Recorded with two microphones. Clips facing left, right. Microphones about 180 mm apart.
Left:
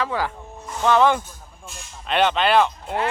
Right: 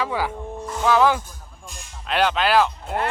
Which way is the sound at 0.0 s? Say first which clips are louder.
Even; 10° right (ahead or behind).